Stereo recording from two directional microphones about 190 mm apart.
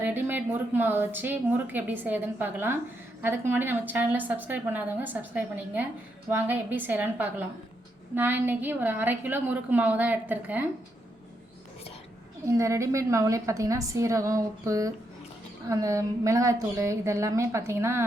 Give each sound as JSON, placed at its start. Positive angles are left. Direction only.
{"t": 0.0, "sound": "speech", "side_deg": -10}
{"t": 12.5, "sound": "speech", "side_deg": -15}